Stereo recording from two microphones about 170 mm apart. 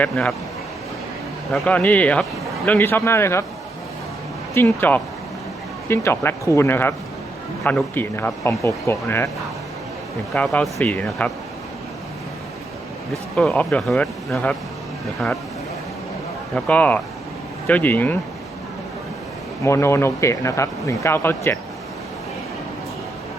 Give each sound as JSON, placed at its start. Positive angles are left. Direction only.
{"t": 0.0, "sound": "a man's voice", "side_deg": 10}
{"t": 1.5, "sound": "a man's voice", "side_deg": 10}
{"t": 4.5, "sound": "a man's voice", "side_deg": 15}
{"t": 10.3, "sound": "a man's voice", "side_deg": 10}
{"t": 13.3, "sound": "speech", "side_deg": 5}
{"t": 16.6, "sound": "a man's voice", "side_deg": 10}
{"t": 19.6, "sound": "a man's voice", "side_deg": 15}